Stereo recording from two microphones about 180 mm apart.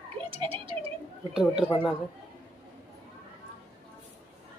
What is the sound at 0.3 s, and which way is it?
Speech, 30° right (ahead or behind).